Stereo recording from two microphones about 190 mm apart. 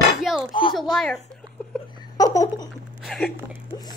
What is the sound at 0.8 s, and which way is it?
Speech, centre (ahead or behind).